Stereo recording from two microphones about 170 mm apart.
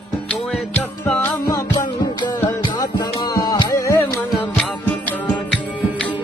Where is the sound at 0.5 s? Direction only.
10° left (ahead or behind).